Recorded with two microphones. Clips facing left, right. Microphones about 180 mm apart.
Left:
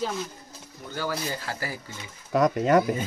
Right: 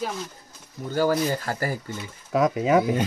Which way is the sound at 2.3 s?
5° right (ahead or behind).